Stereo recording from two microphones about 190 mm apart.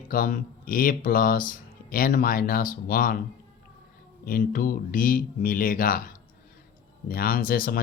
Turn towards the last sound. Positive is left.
turn(degrees=50)  # may be behind; listen again after turning